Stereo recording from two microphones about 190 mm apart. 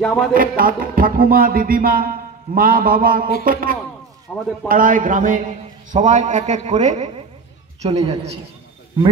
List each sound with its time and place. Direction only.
0.0 s speech: centre (ahead or behind)
0.3 s speech: 50° right (ahead or behind)
4.3 s a man's voice: 5° left (ahead or behind)
4.6 s a man's voice: 45° right (ahead or behind)